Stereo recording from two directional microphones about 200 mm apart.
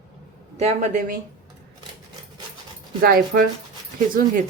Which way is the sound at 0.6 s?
35° right (ahead or behind).